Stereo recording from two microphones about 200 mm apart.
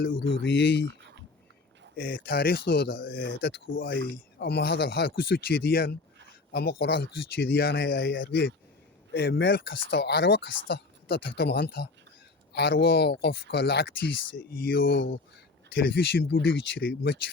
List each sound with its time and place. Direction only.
0.1 s speech: 65° left (ahead or behind)
2.2 s speech: 50° left (ahead or behind)
16.3 s speech: 70° left (ahead or behind)